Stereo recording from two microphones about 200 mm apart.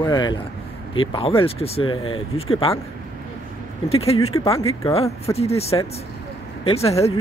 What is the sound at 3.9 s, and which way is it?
Speech, 30° left (ahead or behind).